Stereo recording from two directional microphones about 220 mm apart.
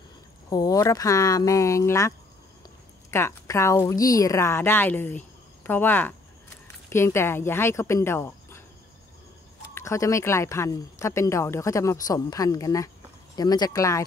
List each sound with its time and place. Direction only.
0.5 s speech: 15° left (ahead or behind)
9.8 s speech: 15° left (ahead or behind)